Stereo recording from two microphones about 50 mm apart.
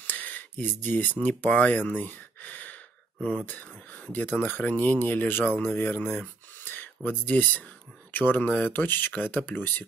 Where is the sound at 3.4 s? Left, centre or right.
Left.